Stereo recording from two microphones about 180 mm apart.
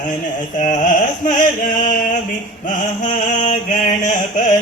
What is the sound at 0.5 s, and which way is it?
Carnatic music, 45° left (ahead or behind).